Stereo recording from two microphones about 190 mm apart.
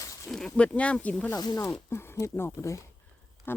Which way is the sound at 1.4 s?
20° left (ahead or behind).